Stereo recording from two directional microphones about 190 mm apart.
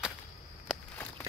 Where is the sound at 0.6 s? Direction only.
10° left (ahead or behind).